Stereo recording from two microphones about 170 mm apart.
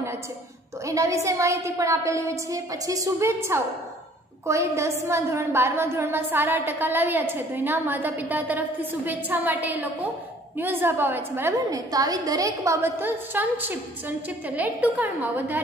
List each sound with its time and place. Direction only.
0.8 s a woman's voice: 20° right (ahead or behind)